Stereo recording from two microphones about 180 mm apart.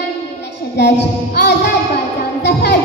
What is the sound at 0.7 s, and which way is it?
Music, 70° left (ahead or behind).